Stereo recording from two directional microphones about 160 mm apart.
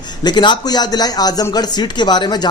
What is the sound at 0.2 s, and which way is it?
Speech, 25° left (ahead or behind).